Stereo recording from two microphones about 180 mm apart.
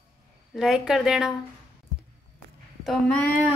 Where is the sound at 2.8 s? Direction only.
5° left (ahead or behind).